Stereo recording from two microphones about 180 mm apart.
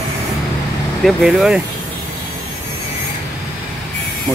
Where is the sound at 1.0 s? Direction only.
Centre (ahead or behind).